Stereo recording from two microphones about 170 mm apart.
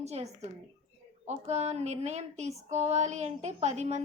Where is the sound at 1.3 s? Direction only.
40° right (ahead or behind).